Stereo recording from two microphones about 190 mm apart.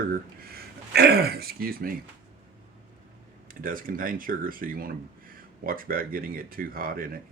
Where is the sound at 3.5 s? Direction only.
45° right (ahead or behind).